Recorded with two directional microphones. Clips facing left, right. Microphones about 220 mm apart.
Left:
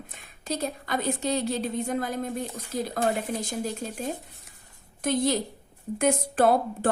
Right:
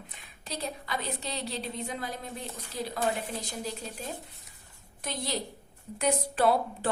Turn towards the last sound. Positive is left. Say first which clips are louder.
# left 4 dB
turn(degrees=50)  # may be behind; listen again after turning